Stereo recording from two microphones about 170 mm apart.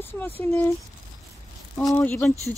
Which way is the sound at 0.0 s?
15° left (ahead or behind).